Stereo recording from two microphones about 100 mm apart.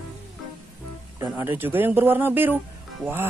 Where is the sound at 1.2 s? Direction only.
20° right (ahead or behind).